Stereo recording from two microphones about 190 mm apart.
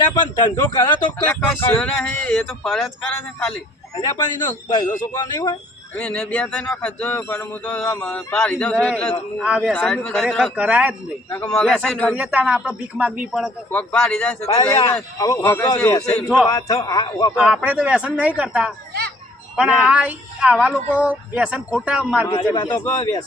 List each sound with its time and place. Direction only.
0.1 s a man's voice: 20° left (ahead or behind)
1.3 s speech: 10° left (ahead or behind)
3.9 s a man's voice: 20° left (ahead or behind)
5.9 s speech: 5° left (ahead or behind)
9.4 s speech: 5° right (ahead or behind)
11.3 s speech: 10° left (ahead or behind)
12.1 s speech: 5° right (ahead or behind)
13.7 s speech: 10° left (ahead or behind)
14.4 s a man's voice: 30° left (ahead or behind)
14.7 s speech: 15° left (ahead or behind)
16.0 s speech: 5° left (ahead or behind)
16.5 s a man's voice: 15° left (ahead or behind)
17.3 s speech: 5° right (ahead or behind)
22.5 s a man's voice: 20° left (ahead or behind)